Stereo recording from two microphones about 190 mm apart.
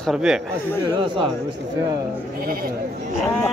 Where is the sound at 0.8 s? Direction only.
25° right (ahead or behind).